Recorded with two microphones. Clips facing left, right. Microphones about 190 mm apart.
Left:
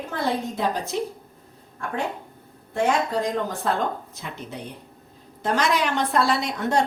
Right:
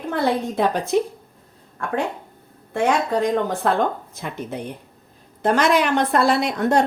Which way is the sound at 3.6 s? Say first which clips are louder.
Right 4 dB; 70° right (ahead or behind).